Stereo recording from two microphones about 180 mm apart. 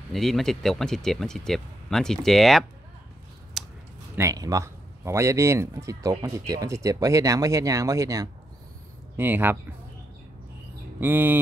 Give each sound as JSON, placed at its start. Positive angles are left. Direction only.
{"t": 0.1, "sound": "speech", "side_deg": 0}
{"t": 3.6, "sound": "a sound", "side_deg": 0}
{"t": 4.1, "sound": "speech", "side_deg": -15}
{"t": 11.0, "sound": "speech", "side_deg": -10}